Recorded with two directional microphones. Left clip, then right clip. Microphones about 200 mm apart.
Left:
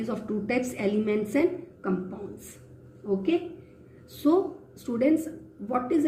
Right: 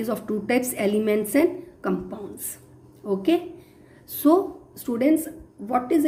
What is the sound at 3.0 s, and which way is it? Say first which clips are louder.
Speech: right 2 dB; 40° right (ahead or behind).